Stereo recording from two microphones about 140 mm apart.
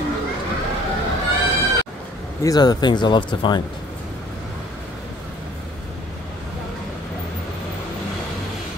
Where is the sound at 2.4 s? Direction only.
30° left (ahead or behind).